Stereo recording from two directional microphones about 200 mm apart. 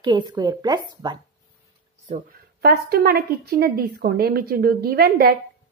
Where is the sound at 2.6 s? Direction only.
50° right (ahead or behind).